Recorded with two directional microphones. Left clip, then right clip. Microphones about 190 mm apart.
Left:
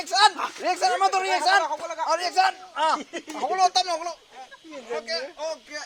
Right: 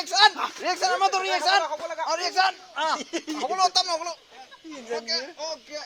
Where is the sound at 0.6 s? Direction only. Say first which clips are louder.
Left 1 dB; 35° left (ahead or behind).